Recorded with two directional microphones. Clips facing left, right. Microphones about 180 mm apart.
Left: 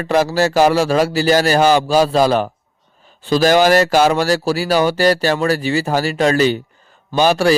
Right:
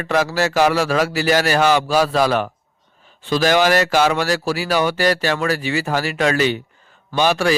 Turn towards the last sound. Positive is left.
turn(degrees=35)  # may be behind; listen again after turning